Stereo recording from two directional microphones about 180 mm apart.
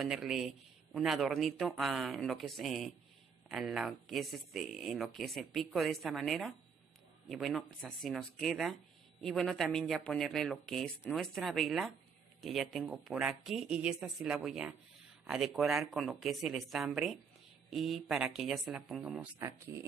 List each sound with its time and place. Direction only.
0.0 s speech: centre (ahead or behind)
19.4 s speech: 15° right (ahead or behind)